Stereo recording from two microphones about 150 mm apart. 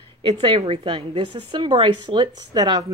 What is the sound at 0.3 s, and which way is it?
A woman's voice, 40° right (ahead or behind).